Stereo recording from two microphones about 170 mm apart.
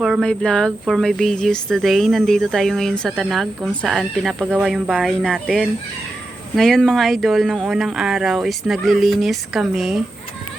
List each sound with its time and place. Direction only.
0.0 s speech: centre (ahead or behind)